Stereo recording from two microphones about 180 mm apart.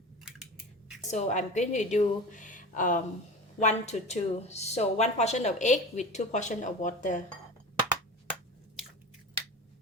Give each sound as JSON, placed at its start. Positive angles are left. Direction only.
{"t": 1.0, "sound": "a woman's voice", "side_deg": 40}